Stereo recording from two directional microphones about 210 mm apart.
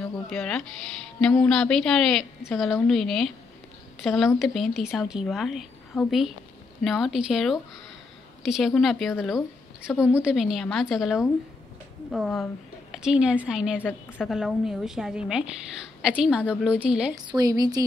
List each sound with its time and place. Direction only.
0.0 s a woman's voice: 5° left (ahead or behind)
9.9 s speech: 10° left (ahead or behind)
10.3 s a woman's voice: centre (ahead or behind)
13.8 s a woman's voice: 5° left (ahead or behind)
17.3 s a woman's voice: 20° right (ahead or behind)